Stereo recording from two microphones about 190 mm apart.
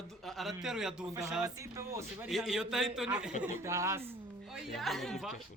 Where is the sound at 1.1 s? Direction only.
15° right (ahead or behind).